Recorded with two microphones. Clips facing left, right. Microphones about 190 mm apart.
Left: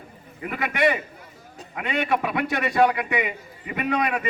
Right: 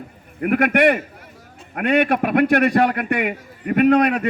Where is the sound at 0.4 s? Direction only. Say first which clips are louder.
Right 7 dB; 65° right (ahead or behind).